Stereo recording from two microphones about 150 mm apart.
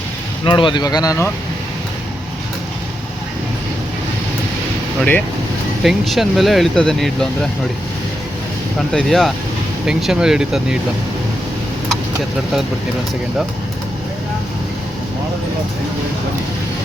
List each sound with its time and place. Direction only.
0.4 s speech: 30° left (ahead or behind)
5.8 s speech: centre (ahead or behind)
8.9 s speech: centre (ahead or behind)